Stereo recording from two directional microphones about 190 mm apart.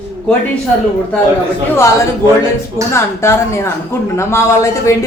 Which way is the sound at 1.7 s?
15° left (ahead or behind).